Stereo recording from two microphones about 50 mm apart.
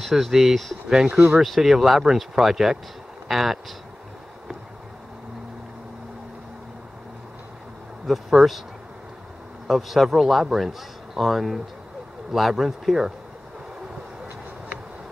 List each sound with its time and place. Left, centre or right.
0.0 s speech: centre
8.1 s speech: centre
9.7 s speech: centre